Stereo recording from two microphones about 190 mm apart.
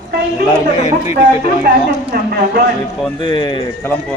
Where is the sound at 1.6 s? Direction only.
55° right (ahead or behind).